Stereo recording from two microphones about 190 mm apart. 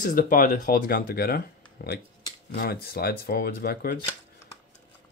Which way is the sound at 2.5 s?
50° left (ahead or behind).